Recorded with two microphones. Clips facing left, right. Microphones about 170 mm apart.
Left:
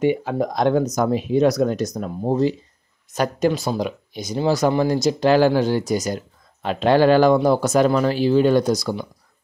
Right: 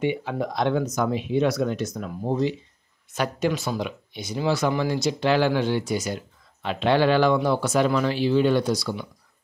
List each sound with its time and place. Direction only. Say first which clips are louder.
0.0 s speech: left 6 dB; 45° left (ahead or behind)